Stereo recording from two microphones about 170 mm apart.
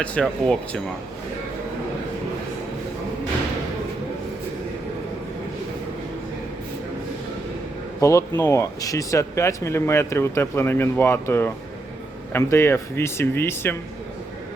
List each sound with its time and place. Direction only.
0.0 s speech: 5° left (ahead or behind)
8.0 s speech: 15° left (ahead or behind)